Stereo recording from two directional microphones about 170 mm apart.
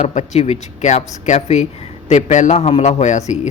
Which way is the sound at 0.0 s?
45° left (ahead or behind).